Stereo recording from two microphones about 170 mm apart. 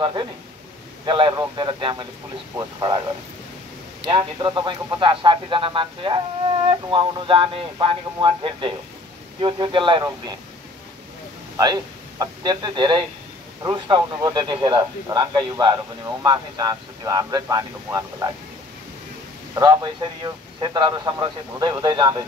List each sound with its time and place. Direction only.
1.0 s a man's voice: 30° right (ahead or behind)
4.0 s a man's voice: 30° right (ahead or behind)
11.5 s a man's voice: 25° right (ahead or behind)
19.5 s a man's voice: 25° right (ahead or behind)